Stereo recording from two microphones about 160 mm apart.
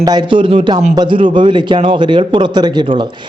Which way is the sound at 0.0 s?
30° right (ahead or behind).